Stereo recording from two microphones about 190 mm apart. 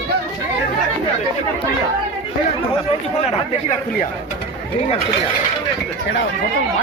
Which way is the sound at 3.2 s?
40° left (ahead or behind).